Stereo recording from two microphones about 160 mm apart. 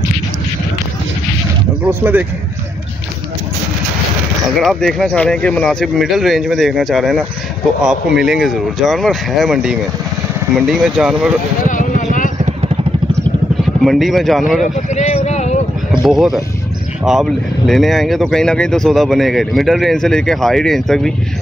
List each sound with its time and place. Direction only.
1.9 s speech: 15° right (ahead or behind)
4.6 s speech: centre (ahead or behind)
11.6 s vehicle: 55° left (ahead or behind)
12.4 s vehicle: 45° right (ahead or behind)
13.8 s speech: centre (ahead or behind)
15.0 s a sound: 45° left (ahead or behind)
16.1 s speech: centre (ahead or behind)